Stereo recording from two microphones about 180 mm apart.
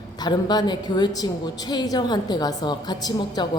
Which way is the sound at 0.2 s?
25° left (ahead or behind).